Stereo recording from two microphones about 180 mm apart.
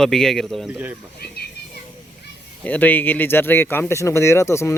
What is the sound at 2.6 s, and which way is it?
Speech, 10° left (ahead or behind).